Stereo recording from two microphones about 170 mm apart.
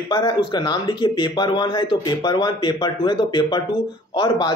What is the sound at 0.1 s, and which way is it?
A man's voice, 25° left (ahead or behind).